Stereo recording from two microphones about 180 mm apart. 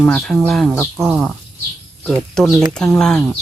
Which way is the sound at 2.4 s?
Centre (ahead or behind).